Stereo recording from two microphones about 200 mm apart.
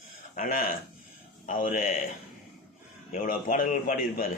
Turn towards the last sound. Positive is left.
turn(degrees=45)  # may be behind; listen again after turning